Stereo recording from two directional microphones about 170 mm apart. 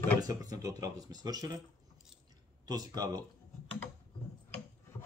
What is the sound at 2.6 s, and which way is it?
Speech, 25° right (ahead or behind).